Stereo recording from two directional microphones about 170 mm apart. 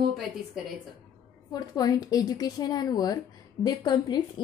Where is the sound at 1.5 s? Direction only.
20° left (ahead or behind).